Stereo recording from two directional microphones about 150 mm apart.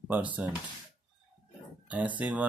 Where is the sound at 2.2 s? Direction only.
10° right (ahead or behind).